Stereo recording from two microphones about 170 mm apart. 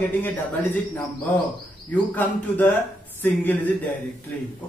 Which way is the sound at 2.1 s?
10° left (ahead or behind).